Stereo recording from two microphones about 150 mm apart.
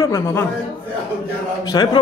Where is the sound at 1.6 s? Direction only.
25° left (ahead or behind).